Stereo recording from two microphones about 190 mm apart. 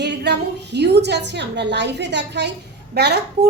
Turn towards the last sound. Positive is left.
turn(degrees=-60)  # may be behind; listen again after turning